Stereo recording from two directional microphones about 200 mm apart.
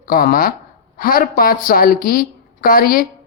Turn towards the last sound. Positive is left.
turn(degrees=45)  # may be behind; listen again after turning